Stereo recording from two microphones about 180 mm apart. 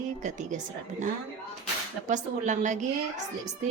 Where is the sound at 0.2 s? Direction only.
45° right (ahead or behind).